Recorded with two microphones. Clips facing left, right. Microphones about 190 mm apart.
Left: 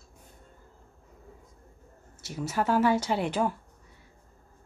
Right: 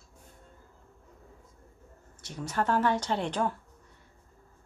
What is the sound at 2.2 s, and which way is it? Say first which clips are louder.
Speech: left 2 dB; 5° left (ahead or behind).